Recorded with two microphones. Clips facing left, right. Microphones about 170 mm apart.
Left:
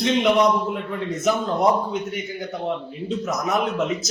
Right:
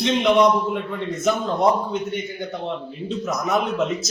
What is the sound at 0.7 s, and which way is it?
A man's voice, centre (ahead or behind).